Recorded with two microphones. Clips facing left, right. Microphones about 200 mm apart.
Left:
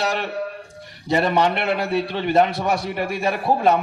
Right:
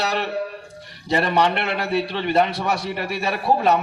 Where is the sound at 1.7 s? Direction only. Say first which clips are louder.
Left 1 dB; 50° left (ahead or behind).